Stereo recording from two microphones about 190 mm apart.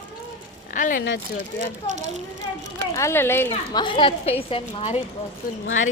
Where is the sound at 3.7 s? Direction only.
25° left (ahead or behind).